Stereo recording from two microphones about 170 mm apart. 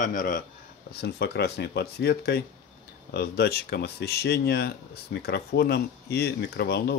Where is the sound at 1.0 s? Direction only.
75° left (ahead or behind).